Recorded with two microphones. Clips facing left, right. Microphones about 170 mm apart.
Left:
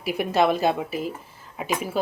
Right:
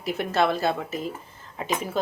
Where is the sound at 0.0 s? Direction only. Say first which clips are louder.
Left 2 dB; 10° left (ahead or behind).